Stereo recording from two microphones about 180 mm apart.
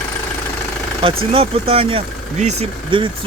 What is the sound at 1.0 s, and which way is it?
Speech, 30° right (ahead or behind).